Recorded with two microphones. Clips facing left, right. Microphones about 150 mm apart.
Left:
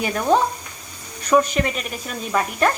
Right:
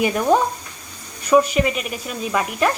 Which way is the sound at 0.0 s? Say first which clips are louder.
Right 2 dB; 10° right (ahead or behind).